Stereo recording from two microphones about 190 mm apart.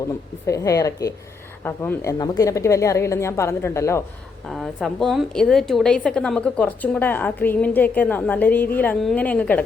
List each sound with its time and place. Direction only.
0.4 s a woman's voice: 15° left (ahead or behind)
4.4 s a woman's voice: centre (ahead or behind)